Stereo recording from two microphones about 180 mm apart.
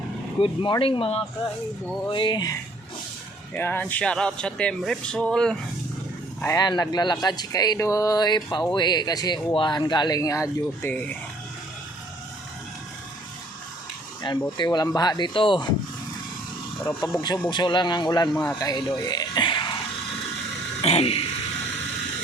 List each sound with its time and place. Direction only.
0.3 s speech: 30° left (ahead or behind)
3.5 s speech: 10° left (ahead or behind)
6.4 s speech: 20° left (ahead or behind)
14.2 s speech: 25° left (ahead or behind)
17.1 s speech: 20° left (ahead or behind)
20.8 s a sound: 35° left (ahead or behind)